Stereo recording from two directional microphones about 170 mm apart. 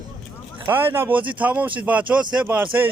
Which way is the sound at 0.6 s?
15° right (ahead or behind).